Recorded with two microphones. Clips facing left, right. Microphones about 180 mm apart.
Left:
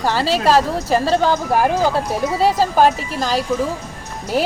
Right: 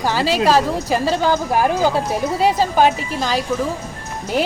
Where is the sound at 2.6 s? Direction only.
Centre (ahead or behind).